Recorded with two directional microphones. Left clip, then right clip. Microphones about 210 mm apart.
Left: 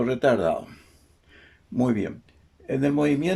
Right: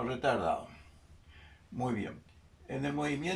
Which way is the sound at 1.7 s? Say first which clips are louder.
Left 11 dB; 50° left (ahead or behind).